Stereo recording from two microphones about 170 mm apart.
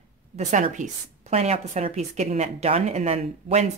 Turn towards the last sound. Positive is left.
turn(degrees=-40)  # may be behind; listen again after turning